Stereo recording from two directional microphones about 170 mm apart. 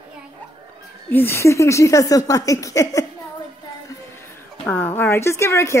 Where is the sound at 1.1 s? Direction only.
10° left (ahead or behind).